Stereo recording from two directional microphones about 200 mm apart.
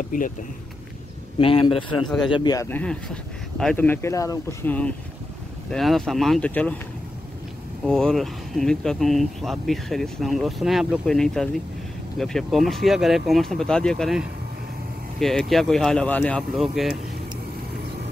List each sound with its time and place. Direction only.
0.1 s speech: 40° left (ahead or behind)
1.4 s a man's voice: 25° left (ahead or behind); by 6.8 s 5° left (ahead or behind)
7.8 s speech: 5° left (ahead or behind)